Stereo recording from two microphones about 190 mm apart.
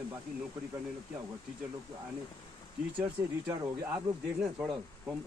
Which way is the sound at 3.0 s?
15° right (ahead or behind).